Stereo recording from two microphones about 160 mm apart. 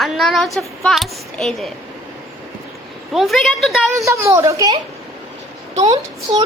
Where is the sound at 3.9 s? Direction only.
20° right (ahead or behind).